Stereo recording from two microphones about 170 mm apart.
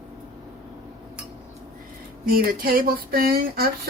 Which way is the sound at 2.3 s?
60° right (ahead or behind).